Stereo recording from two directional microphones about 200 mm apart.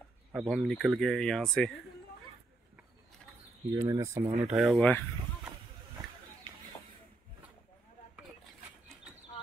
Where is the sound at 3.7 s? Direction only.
15° right (ahead or behind).